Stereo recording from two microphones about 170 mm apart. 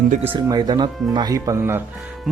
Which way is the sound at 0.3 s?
25° right (ahead or behind).